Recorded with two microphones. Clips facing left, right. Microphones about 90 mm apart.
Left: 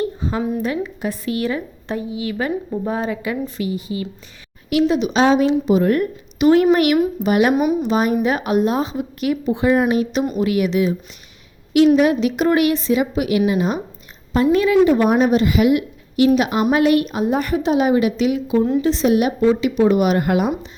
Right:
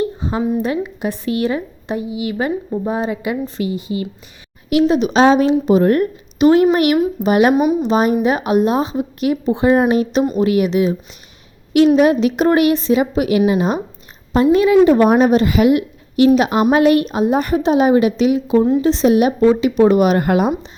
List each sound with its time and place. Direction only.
0.0 s a sound: 20° right (ahead or behind)
1.2 s speech: 25° right (ahead or behind)
1.9 s a woman's voice: 10° right (ahead or behind)
3.4 s speech: 25° right (ahead or behind)
4.9 s a woman's voice: 40° right (ahead or behind)
6.4 s a woman's voice: 25° right (ahead or behind)
10.7 s a woman's voice: 20° right (ahead or behind)
14.3 s speech: 25° right (ahead or behind)
14.8 s a woman's voice: 45° right (ahead or behind)
16.5 s a woman's voice: 45° right (ahead or behind); by 19.3 s 25° right (ahead or behind)
19.5 s a woman's voice: 40° right (ahead or behind)